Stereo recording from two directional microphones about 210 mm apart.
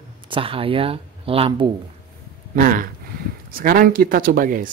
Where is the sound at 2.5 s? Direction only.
40° right (ahead or behind).